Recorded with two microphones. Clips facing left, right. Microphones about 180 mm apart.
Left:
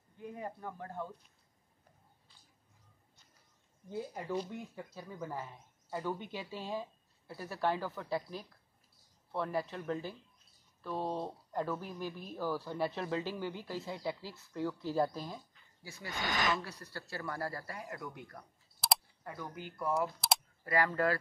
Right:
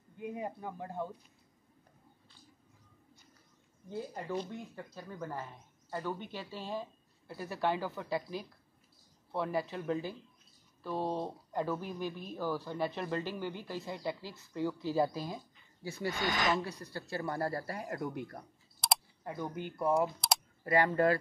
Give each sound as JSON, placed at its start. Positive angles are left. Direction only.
{"t": 0.2, "sound": "speech", "side_deg": -10}
{"t": 3.9, "sound": "speech", "side_deg": 5}
{"t": 15.8, "sound": "speech", "side_deg": -25}
{"t": 17.8, "sound": "speech", "side_deg": -45}
{"t": 18.1, "sound": "speech", "side_deg": -35}
{"t": 18.8, "sound": "a sound", "side_deg": 0}
{"t": 19.2, "sound": "speech", "side_deg": -20}
{"t": 20.2, "sound": "typing", "side_deg": 0}
{"t": 20.6, "sound": "speech", "side_deg": -25}